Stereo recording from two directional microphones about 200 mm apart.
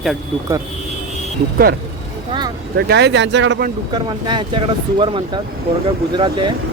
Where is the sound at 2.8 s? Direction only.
55° right (ahead or behind).